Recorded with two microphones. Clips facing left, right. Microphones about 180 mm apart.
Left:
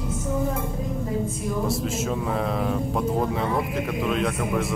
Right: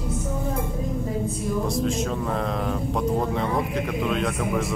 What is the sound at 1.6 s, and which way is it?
Speech, 5° left (ahead or behind).